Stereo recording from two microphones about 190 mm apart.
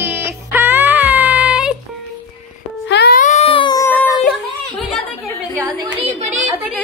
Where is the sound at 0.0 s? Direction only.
10° right (ahead or behind).